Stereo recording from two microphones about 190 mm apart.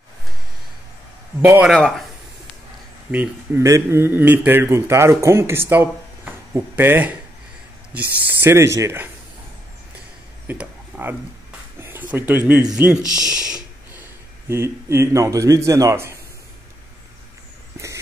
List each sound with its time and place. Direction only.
1.4 s a man's voice: 10° right (ahead or behind)
1.7 s speech: centre (ahead or behind)
3.1 s a man's voice: 10° right (ahead or behind)
10.5 s a sound: 10° right (ahead or behind)
12.7 s a man's voice: 5° right (ahead or behind)
13.0 s speech: 20° left (ahead or behind)
13.3 s a man's voice: 5° right (ahead or behind)